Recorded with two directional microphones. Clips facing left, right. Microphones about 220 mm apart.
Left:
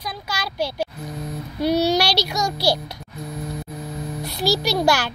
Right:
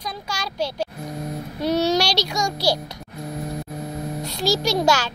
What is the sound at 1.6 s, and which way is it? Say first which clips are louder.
Speech: left 1 dB; 5° left (ahead or behind).